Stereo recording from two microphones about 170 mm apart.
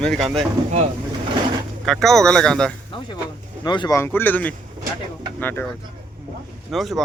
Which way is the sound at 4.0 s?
15° left (ahead or behind).